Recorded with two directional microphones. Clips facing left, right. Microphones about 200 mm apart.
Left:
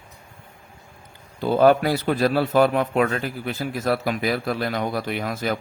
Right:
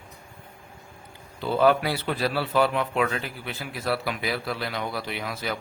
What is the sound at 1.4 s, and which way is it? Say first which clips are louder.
A man's voice: left 4 dB; 45° left (ahead or behind).